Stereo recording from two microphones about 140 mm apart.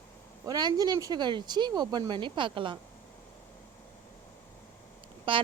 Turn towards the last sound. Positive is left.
turn(degrees=-40)  # may be behind; listen again after turning